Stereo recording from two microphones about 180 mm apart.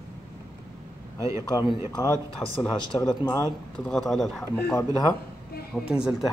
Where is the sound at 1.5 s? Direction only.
25° left (ahead or behind).